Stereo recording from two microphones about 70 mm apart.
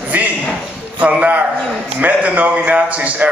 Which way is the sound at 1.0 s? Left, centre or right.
Right.